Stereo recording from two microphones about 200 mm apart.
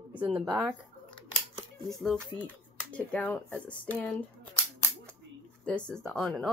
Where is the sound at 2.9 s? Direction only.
5° left (ahead or behind).